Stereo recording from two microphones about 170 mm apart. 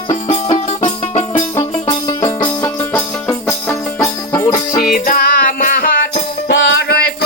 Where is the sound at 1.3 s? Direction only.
20° left (ahead or behind).